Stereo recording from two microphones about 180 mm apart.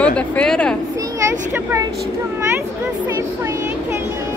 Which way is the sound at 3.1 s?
15° right (ahead or behind).